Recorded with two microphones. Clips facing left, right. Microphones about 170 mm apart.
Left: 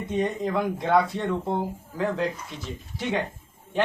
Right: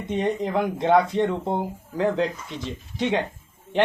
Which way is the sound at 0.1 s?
20° right (ahead or behind).